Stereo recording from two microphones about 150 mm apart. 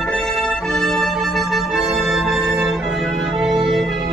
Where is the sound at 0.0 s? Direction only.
5° left (ahead or behind).